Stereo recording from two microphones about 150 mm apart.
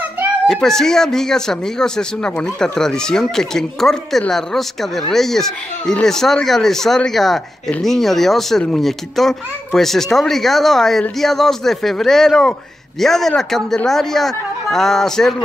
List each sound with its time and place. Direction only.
0.5 s speech: 5° left (ahead or behind)